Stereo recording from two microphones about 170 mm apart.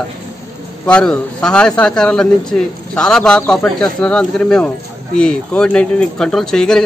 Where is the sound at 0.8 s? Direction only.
5° left (ahead or behind).